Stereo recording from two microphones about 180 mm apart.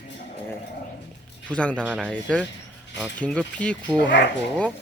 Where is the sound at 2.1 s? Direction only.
5° left (ahead or behind).